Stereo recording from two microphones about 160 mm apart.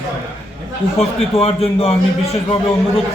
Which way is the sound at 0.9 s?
40° left (ahead or behind).